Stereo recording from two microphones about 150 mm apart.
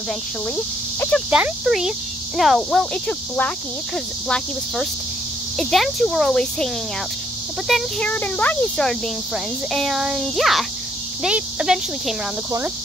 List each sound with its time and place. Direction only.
1.3 s speech: 5° right (ahead or behind)
12.4 s speech: 20° right (ahead or behind)